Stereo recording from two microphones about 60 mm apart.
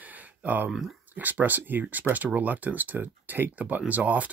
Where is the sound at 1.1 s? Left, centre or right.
Right.